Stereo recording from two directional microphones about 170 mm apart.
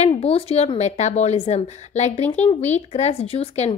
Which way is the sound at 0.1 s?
35° left (ahead or behind).